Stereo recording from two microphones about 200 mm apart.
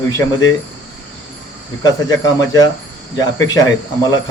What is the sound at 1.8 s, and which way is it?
Speech, 20° left (ahead or behind).